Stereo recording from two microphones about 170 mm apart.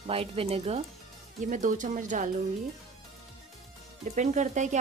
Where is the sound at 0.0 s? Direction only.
35° right (ahead or behind).